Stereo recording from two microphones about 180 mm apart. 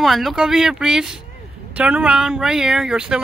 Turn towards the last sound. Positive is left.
turn(degrees=-5)  # may be behind; listen again after turning